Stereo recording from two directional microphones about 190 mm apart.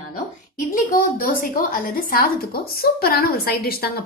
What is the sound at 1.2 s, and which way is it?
A woman's voice, 45° left (ahead or behind).